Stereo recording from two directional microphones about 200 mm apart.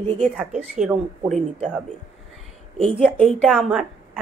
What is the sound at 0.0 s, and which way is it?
A woman's voice, 5° left (ahead or behind).